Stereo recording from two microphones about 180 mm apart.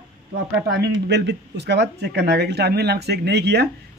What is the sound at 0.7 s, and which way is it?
Speech, 70° right (ahead or behind).